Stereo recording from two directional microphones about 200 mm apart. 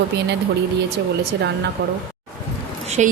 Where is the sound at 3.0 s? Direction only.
35° right (ahead or behind).